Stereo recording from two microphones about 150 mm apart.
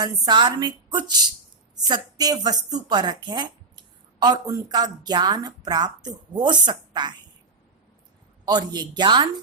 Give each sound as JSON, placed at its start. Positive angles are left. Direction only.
{"t": 0.0, "sound": "a woman's voice", "side_deg": -25}
{"t": 8.4, "sound": "a woman's voice", "side_deg": -25}